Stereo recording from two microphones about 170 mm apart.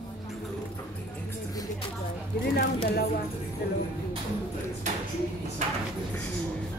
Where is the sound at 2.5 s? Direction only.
70° left (ahead or behind).